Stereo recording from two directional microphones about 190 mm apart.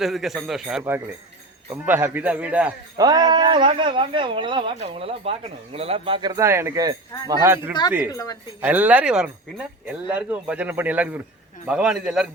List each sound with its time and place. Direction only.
0.0 s a man's voice: centre (ahead or behind)
3.0 s speech: 20° right (ahead or behind)
8.1 s speech: 20° left (ahead or behind)
8.6 s a man's voice: 10° right (ahead or behind)